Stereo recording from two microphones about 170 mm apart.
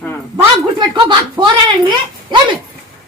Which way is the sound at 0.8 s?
25° right (ahead or behind).